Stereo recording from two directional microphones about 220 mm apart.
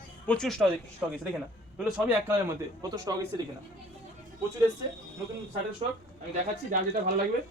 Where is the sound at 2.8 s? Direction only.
15° right (ahead or behind).